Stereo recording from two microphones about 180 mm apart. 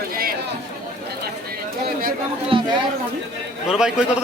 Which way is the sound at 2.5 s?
30° right (ahead or behind).